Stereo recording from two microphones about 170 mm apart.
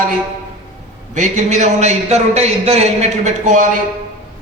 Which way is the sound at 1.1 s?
45° right (ahead or behind).